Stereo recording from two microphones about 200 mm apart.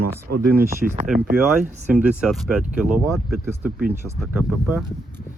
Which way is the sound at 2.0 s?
5° right (ahead or behind).